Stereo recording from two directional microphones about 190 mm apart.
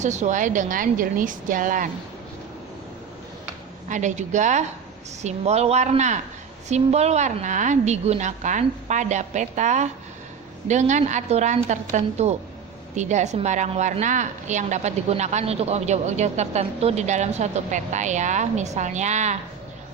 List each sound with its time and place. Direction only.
0.0 s speech: 40° right (ahead or behind)
3.8 s a woman's voice: 40° right (ahead or behind)